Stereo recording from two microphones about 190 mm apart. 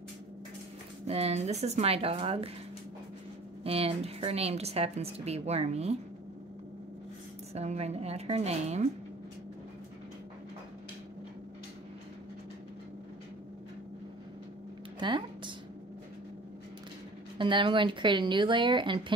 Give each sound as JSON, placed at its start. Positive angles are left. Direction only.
{"t": 1.0, "sound": "a woman's voice", "side_deg": -35}
{"t": 3.6, "sound": "a woman's voice", "side_deg": -30}
{"t": 7.5, "sound": "a woman's voice", "side_deg": -35}
{"t": 15.0, "sound": "a sound", "side_deg": -25}
{"t": 17.4, "sound": "a woman's voice", "side_deg": -25}